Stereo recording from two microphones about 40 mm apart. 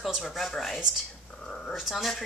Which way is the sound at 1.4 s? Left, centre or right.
Centre.